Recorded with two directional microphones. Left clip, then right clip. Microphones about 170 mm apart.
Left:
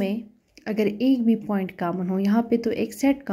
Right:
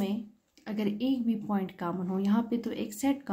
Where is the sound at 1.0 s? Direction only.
25° right (ahead or behind).